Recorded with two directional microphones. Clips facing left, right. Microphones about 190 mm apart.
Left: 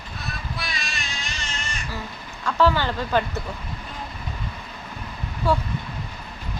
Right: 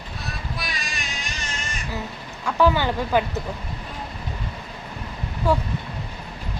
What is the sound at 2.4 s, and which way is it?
Speech, 15° right (ahead or behind).